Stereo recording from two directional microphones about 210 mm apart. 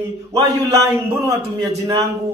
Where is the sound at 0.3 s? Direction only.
15° right (ahead or behind).